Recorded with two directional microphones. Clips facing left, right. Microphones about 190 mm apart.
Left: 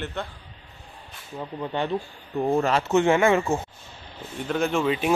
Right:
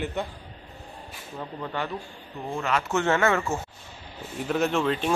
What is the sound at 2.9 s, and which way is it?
Speech, 15° left (ahead or behind).